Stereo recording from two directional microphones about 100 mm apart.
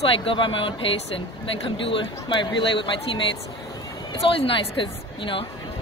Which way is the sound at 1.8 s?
60° left (ahead or behind).